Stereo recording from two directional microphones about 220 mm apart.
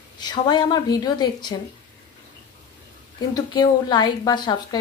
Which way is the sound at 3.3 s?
20° left (ahead or behind).